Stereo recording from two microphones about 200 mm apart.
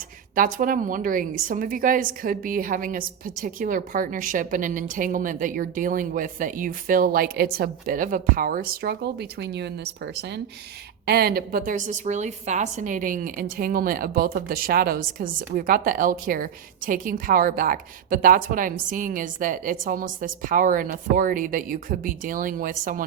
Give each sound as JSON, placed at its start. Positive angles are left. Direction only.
{"t": 0.3, "sound": "a woman's voice", "side_deg": -45}